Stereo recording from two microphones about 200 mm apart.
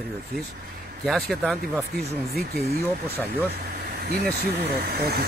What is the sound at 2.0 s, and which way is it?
Speech, 55° right (ahead or behind).